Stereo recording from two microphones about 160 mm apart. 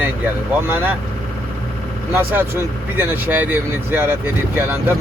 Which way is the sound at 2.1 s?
10° right (ahead or behind).